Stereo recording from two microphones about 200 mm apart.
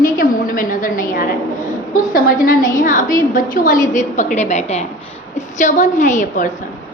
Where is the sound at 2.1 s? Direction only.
40° left (ahead or behind).